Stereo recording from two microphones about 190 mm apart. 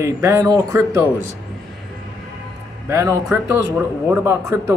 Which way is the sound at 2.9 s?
15° right (ahead or behind).